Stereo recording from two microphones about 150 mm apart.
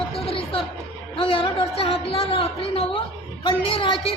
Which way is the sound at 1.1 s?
35° left (ahead or behind).